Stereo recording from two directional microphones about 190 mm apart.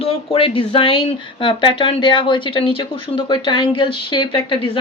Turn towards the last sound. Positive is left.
turn(degrees=30)  # may be behind; listen again after turning